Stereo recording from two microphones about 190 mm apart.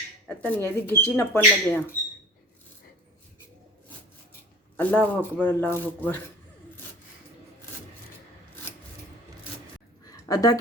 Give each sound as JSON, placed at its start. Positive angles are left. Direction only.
{"t": 0.3, "sound": "speech", "side_deg": 10}
{"t": 4.8, "sound": "speech", "side_deg": 10}
{"t": 10.1, "sound": "a sound", "side_deg": 20}